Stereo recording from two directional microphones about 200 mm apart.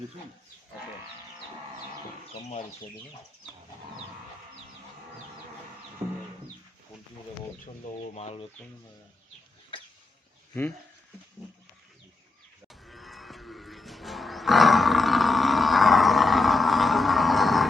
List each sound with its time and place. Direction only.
8.1 s speech: 30° left (ahead or behind)
9.7 s a sound: 25° left (ahead or behind)
12.6 s cattle: centre (ahead or behind)